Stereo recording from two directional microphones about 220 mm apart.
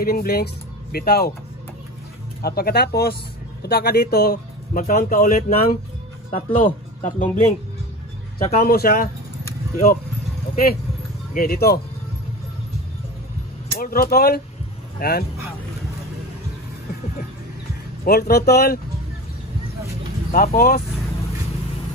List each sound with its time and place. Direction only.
0.0 s speech: 40° left (ahead or behind)
2.4 s speech: 45° left (ahead or behind)
8.6 s speech: 40° left (ahead or behind)
10.5 s speech: 45° left (ahead or behind)
13.7 s speech: 40° left (ahead or behind)
18.0 s speech: 45° left (ahead or behind)
20.3 s speech: 40° left (ahead or behind)